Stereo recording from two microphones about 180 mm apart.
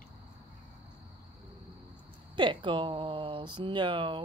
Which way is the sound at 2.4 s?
25° right (ahead or behind).